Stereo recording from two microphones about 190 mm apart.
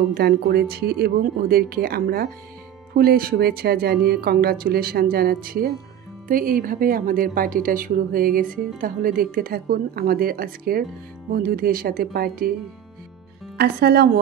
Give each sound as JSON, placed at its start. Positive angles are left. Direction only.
{"t": 0.1, "sound": "speech", "side_deg": -60}
{"t": 13.6, "sound": "speech", "side_deg": -55}